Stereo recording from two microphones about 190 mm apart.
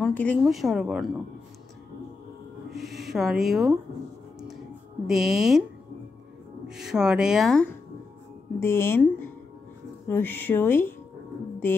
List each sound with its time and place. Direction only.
0.0 s speech: 10° left (ahead or behind)
2.7 s speech: centre (ahead or behind)
5.0 s speech: centre (ahead or behind)
6.7 s speech: 5° right (ahead or behind)
8.5 s speech: 15° left (ahead or behind)